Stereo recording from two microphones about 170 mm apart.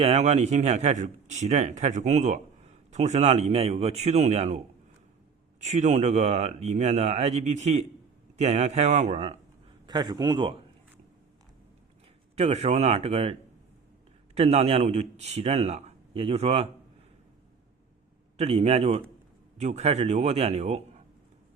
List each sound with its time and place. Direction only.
0.0 s speech: 40° right (ahead or behind)
5.8 s speech: 45° right (ahead or behind)
9.8 s a man's voice: 25° right (ahead or behind)
12.4 s speech: 40° right (ahead or behind)
14.3 s speech: 40° right (ahead or behind)
18.3 s speech: 40° right (ahead or behind)